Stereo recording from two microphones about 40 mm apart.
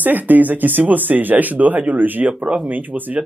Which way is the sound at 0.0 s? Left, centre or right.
Right.